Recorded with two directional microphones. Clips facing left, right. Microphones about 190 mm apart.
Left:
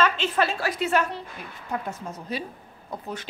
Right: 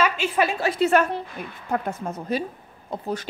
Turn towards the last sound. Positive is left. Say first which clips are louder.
# right 5 dB
turn(degrees=-35)  # may be behind; listen again after turning